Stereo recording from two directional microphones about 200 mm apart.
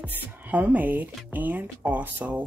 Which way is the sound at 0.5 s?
10° right (ahead or behind).